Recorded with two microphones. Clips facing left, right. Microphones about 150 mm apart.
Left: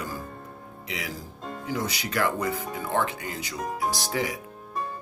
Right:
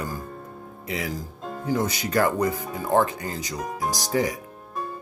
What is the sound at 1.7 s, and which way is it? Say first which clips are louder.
Speech: right 6 dB; 45° right (ahead or behind).